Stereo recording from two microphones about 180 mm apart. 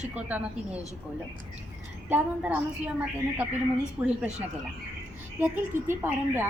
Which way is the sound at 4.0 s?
10° right (ahead or behind).